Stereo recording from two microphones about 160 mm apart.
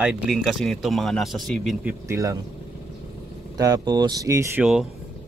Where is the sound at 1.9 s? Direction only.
20° right (ahead or behind).